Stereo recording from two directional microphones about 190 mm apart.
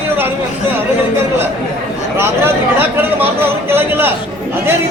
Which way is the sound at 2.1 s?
10° right (ahead or behind).